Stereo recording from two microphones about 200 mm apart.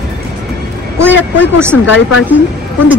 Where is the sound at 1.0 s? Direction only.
10° right (ahead or behind).